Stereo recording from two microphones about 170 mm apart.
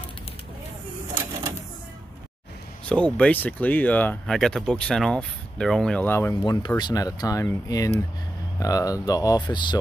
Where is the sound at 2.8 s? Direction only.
5° left (ahead or behind).